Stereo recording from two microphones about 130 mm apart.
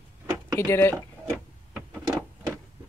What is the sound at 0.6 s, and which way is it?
Speech, 20° left (ahead or behind).